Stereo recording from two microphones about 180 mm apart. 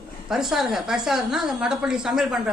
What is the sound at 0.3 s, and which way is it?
A woman's voice, centre (ahead or behind).